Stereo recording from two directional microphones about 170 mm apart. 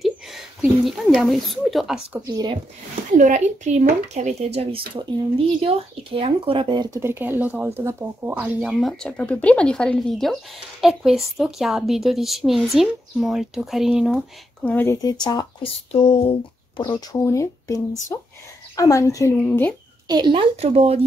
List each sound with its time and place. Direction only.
0.0 s speech: centre (ahead or behind)
2.2 s speech: 20° right (ahead or behind)
3.1 s a woman's voice: 45° right (ahead or behind); by 14.2 s 5° right (ahead or behind)
14.6 s speech: 10° left (ahead or behind)
15.9 s speech: 35° left (ahead or behind); by 19.3 s 20° left (ahead or behind)
19.3 s speech: 10° left (ahead or behind)
20.1 s speech: 25° right (ahead or behind)